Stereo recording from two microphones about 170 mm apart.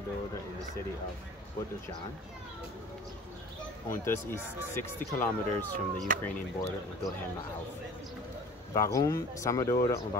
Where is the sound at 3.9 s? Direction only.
15° left (ahead or behind).